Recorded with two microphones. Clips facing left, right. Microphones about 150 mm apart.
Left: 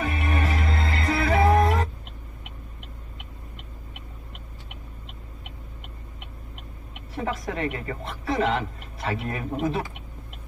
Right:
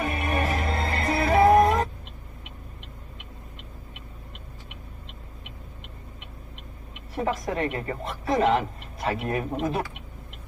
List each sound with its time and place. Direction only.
0.0 s music: 40° right (ahead or behind)
7.2 s speech: 35° right (ahead or behind)